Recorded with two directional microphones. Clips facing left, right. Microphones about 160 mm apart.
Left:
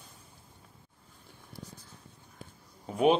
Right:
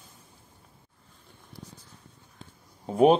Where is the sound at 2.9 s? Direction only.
35° right (ahead or behind).